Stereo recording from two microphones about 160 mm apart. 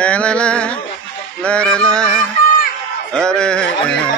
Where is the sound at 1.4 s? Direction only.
5° left (ahead or behind).